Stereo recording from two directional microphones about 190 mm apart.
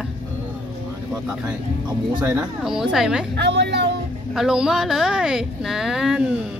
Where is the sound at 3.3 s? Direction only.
65° right (ahead or behind).